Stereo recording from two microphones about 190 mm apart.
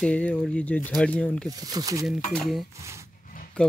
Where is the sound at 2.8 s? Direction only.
15° right (ahead or behind).